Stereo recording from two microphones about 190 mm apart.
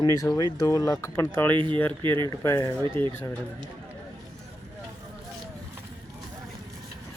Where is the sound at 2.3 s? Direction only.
15° left (ahead or behind).